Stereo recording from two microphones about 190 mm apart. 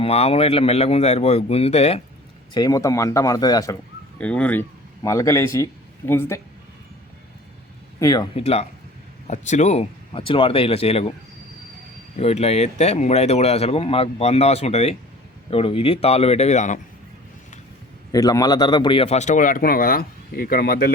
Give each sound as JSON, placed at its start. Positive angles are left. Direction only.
{"t": 0.0, "sound": "speech", "side_deg": 30}
{"t": 2.5, "sound": "speech", "side_deg": 20}
{"t": 4.2, "sound": "speech", "side_deg": 5}
{"t": 7.9, "sound": "speech", "side_deg": 20}
{"t": 12.1, "sound": "speech", "side_deg": 35}
{"t": 18.1, "sound": "speech", "side_deg": 20}